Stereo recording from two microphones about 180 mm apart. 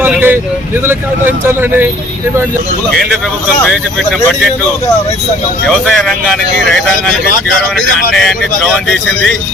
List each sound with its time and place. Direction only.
0.0 s vehicle: 10° right (ahead or behind)
0.9 s speech: 10° right (ahead or behind)
5.6 s speech: 5° left (ahead or behind)
8.1 s speech: centre (ahead or behind)